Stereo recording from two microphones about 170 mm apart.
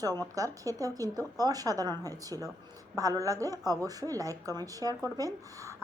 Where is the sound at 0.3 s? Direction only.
20° right (ahead or behind).